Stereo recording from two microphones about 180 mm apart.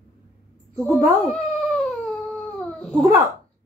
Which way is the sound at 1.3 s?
5° left (ahead or behind).